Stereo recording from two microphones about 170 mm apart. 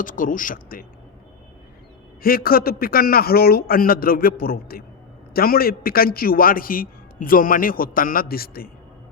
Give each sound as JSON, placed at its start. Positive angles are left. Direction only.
{"t": 0.0, "sound": "speech", "side_deg": 50}
{"t": 2.2, "sound": "a man's voice", "side_deg": 60}